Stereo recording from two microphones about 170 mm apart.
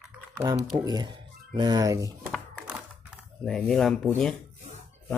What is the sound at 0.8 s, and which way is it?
Speech, 25° right (ahead or behind).